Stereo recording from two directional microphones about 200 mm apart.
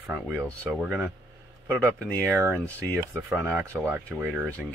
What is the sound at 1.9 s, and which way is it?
Speech, 5° left (ahead or behind).